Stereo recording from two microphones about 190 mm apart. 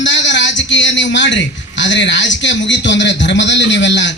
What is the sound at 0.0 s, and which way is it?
A man's voice, 70° left (ahead or behind).